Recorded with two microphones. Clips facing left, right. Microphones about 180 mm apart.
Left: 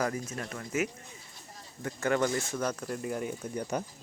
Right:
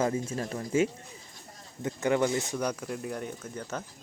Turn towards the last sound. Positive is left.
turn(degrees=10)  # may be behind; listen again after turning